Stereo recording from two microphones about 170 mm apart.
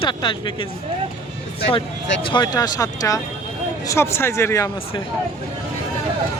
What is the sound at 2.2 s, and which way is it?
Speech, 25° left (ahead or behind).